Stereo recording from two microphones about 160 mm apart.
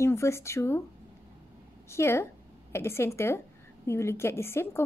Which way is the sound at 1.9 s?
15° left (ahead or behind).